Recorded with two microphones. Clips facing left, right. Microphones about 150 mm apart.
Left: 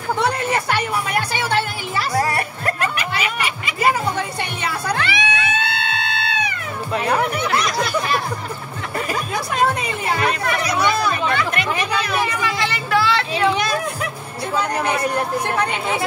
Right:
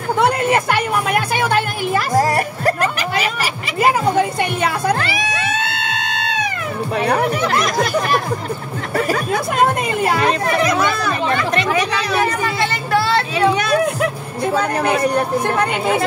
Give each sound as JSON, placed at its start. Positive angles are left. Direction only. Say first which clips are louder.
{"t": 0.2, "sound": "music", "louder": "right 6 dB", "side_deg": -55}
{"t": 3.8, "sound": "a woman's voice", "louder": "right 5 dB", "side_deg": -50}
{"t": 4.9, "sound": "cat", "louder": "right 1 dB", "side_deg": -40}
{"t": 7.0, "sound": "speech", "louder": "right 3 dB", "side_deg": -35}
{"t": 9.1, "sound": "speech", "louder": "right 5 dB", "side_deg": -60}
{"t": 10.2, "sound": "speech", "louder": "right 4 dB", "side_deg": -35}
{"t": 11.2, "sound": "a sound", "louder": "right 3 dB", "side_deg": -35}
{"t": 14.4, "sound": "speech", "louder": "right 4 dB", "side_deg": -55}